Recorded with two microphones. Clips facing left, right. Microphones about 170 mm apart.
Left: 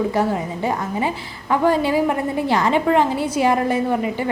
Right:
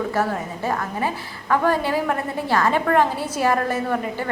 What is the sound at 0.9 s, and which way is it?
A woman's voice, 15° left (ahead or behind).